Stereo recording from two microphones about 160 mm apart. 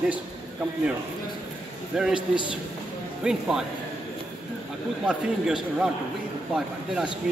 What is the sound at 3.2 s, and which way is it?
Speech, 5° right (ahead or behind).